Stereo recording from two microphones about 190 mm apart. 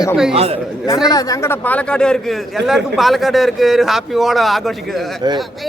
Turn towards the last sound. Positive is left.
turn(degrees=0)  # may be behind; listen again after turning